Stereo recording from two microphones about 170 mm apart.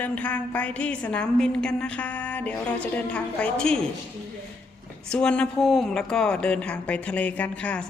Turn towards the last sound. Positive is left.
turn(degrees=5)  # may be behind; listen again after turning